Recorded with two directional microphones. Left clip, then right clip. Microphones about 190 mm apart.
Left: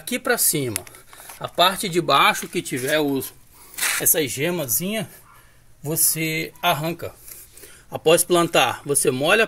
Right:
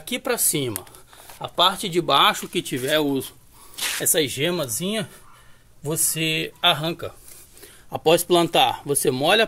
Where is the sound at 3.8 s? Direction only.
25° left (ahead or behind).